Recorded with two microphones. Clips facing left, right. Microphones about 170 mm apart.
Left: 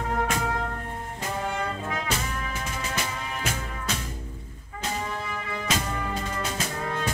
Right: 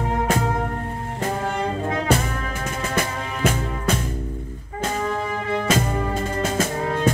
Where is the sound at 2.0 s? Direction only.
55° right (ahead or behind).